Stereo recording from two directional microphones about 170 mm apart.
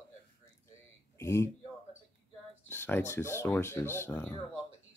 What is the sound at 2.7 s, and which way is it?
Speech, 10° left (ahead or behind).